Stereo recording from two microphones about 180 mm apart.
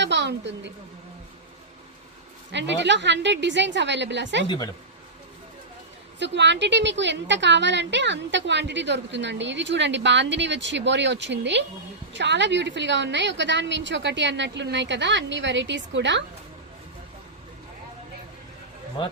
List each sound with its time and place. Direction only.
0.0 s a sound: 75° right (ahead or behind)
2.5 s a woman's voice: 75° right (ahead or behind)
4.4 s speech: 25° left (ahead or behind)
6.1 s a woman's voice: 80° right
19.0 s speech: 25° left (ahead or behind)